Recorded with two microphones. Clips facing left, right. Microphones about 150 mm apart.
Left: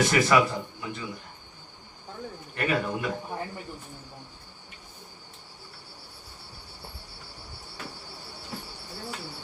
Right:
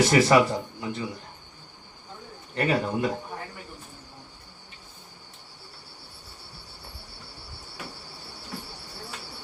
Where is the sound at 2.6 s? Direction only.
30° right (ahead or behind).